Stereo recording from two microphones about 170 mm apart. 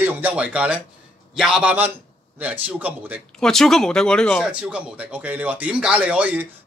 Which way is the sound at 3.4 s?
Centre (ahead or behind).